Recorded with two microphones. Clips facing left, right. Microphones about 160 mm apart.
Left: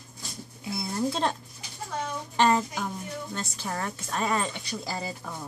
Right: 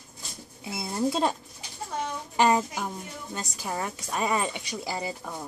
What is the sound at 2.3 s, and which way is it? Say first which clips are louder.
A woman's voice: right 1 dB; 10° right (ahead or behind).